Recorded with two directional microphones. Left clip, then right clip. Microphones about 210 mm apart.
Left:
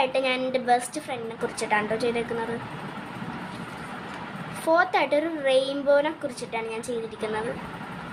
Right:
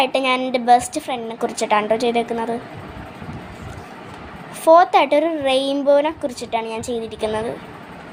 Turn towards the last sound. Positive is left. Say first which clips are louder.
# right 6 dB
turn(degrees=-25)  # may be behind; listen again after turning